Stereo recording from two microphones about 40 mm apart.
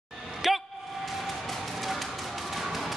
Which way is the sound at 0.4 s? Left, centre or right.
Centre.